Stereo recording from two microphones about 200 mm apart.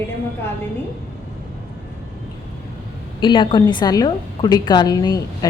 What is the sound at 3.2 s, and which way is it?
A woman's voice, 25° left (ahead or behind).